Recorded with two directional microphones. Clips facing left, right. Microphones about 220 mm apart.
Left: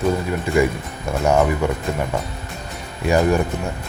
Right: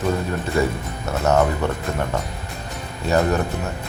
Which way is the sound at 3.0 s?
10° left (ahead or behind).